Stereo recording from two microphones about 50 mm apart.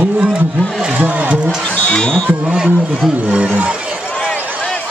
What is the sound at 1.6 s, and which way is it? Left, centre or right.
Speech, left.